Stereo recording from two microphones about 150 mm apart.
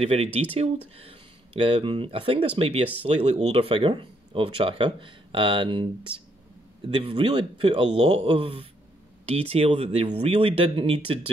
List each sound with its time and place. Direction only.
0.0 s speech: 40° right (ahead or behind)